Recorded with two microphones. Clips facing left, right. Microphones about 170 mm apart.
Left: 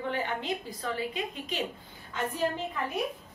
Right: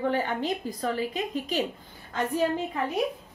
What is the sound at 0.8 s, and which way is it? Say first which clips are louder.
Speech: right 7 dB; 40° right (ahead or behind).